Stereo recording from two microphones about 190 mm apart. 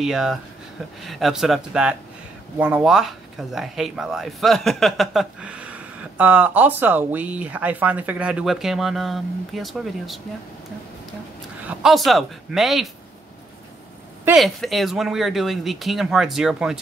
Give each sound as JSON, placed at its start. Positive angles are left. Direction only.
{"t": 0.0, "sound": "speech", "side_deg": 0}
{"t": 11.6, "sound": "speech", "side_deg": 0}
{"t": 14.3, "sound": "speech", "side_deg": 0}